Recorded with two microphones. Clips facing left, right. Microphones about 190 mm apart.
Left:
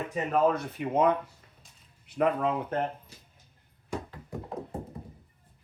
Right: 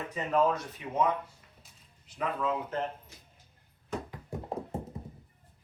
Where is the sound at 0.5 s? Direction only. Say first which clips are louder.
Left 5 dB; 60° left (ahead or behind).